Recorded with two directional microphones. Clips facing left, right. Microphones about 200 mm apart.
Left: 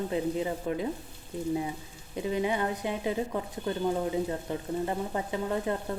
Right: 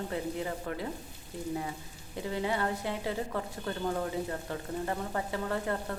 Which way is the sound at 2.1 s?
15° left (ahead or behind).